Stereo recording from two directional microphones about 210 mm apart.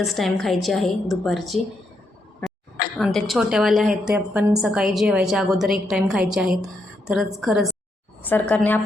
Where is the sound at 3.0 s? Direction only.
Centre (ahead or behind).